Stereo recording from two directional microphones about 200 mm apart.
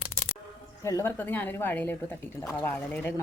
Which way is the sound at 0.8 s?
15° left (ahead or behind).